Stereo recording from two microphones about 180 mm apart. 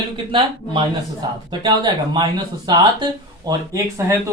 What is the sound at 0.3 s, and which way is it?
Speech, 30° right (ahead or behind).